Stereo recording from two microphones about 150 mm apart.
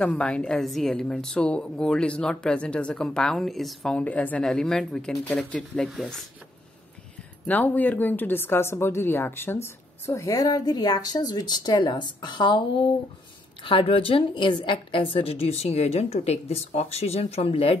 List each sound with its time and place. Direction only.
0.0 s a woman's voice: 5° left (ahead or behind)
7.4 s a woman's voice: 10° left (ahead or behind); by 12.6 s 30° left (ahead or behind)
13.7 s a woman's voice: 35° left (ahead or behind)